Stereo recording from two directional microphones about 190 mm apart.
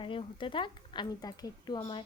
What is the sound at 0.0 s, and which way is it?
Speech, 25° left (ahead or behind).